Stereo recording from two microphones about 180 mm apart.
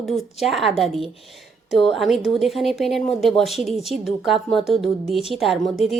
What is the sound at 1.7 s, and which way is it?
Speech, centre (ahead or behind).